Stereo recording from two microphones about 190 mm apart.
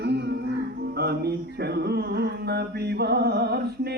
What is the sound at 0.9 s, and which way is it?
Singing, 60° right (ahead or behind).